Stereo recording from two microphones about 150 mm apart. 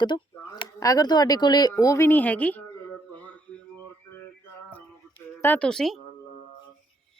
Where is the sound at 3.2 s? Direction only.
10° left (ahead or behind).